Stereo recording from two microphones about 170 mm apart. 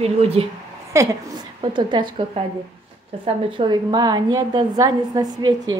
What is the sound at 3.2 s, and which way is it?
A woman's voice, 30° right (ahead or behind).